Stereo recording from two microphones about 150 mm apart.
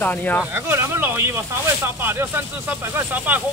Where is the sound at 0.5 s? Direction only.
15° right (ahead or behind).